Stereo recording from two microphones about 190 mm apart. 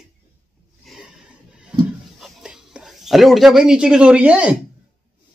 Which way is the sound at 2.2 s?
5° right (ahead or behind).